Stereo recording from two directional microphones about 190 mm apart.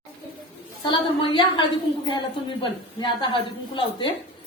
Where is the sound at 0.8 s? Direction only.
25° left (ahead or behind).